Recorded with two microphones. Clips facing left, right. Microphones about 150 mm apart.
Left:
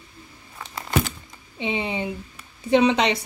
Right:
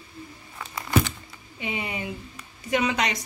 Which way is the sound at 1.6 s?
25° left (ahead or behind).